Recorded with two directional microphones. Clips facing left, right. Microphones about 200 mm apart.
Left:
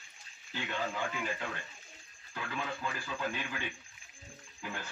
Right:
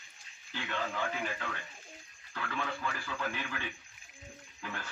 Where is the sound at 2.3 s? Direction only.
15° left (ahead or behind).